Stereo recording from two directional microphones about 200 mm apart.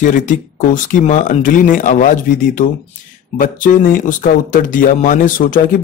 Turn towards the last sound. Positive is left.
turn(degrees=40)  # may be behind; listen again after turning